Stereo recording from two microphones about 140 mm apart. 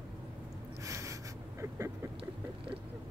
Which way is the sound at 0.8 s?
20° right (ahead or behind).